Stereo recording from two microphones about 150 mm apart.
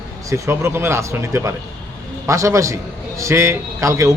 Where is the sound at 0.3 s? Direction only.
20° right (ahead or behind).